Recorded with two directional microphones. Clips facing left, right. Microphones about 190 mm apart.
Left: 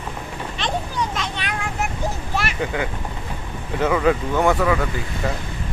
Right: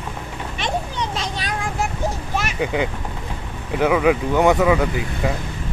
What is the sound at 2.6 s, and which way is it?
Speech, 15° right (ahead or behind).